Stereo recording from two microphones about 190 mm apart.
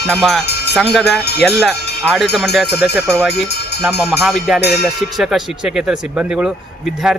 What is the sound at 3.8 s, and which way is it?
Speech, 10° right (ahead or behind).